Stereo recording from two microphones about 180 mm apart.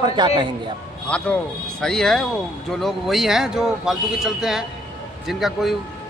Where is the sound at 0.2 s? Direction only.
25° right (ahead or behind).